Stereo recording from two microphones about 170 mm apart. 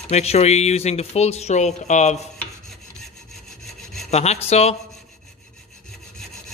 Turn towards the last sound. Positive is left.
turn(degrees=40)  # may be behind; listen again after turning